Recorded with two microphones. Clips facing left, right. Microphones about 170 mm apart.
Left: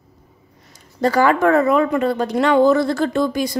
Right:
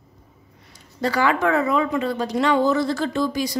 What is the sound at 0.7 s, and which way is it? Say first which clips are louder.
A woman's voice: left 6 dB; 45° left (ahead or behind).